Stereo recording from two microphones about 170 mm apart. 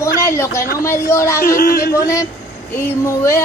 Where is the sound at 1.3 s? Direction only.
60° left (ahead or behind).